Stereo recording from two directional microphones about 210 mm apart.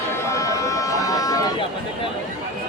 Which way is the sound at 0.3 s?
15° left (ahead or behind).